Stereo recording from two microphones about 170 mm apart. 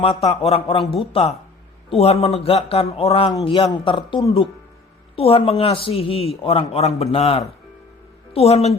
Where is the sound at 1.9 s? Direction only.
35° left (ahead or behind).